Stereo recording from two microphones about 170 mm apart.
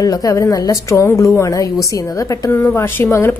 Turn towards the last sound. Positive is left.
turn(degrees=15)  # may be behind; listen again after turning